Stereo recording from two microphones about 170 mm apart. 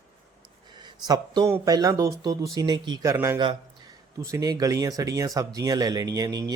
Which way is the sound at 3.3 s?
25° right (ahead or behind).